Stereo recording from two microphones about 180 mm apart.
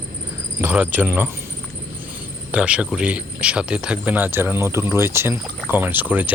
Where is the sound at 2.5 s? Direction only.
5° right (ahead or behind).